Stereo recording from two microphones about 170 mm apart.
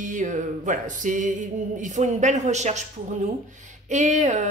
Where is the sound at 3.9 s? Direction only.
45° right (ahead or behind).